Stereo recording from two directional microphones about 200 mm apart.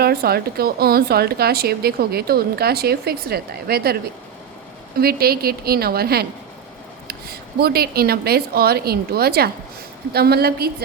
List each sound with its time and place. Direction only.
0.0 s a woman's voice: 50° right (ahead or behind)